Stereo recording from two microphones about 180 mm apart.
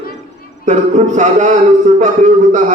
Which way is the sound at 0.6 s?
40° right (ahead or behind).